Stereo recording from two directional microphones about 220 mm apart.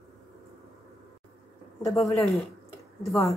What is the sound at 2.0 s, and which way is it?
Speech, 15° left (ahead or behind).